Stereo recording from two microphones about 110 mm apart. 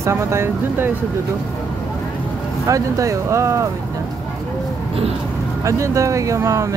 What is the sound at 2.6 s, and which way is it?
Speech, 30° right (ahead or behind).